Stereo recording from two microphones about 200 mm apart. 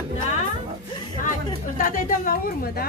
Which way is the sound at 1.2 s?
40° left (ahead or behind).